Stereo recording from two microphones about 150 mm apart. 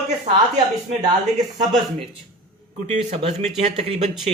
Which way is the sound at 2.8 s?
45° right (ahead or behind).